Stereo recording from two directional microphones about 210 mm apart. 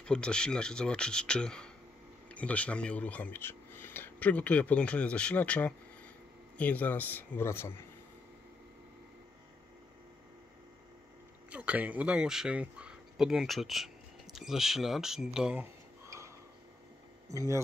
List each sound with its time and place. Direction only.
0.0 s speech: 5° left (ahead or behind)
11.5 s speech: 5° right (ahead or behind)
17.3 s speech: 15° right (ahead or behind)